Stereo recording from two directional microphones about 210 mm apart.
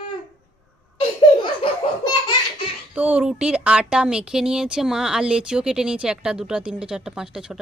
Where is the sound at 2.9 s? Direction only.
5° right (ahead or behind).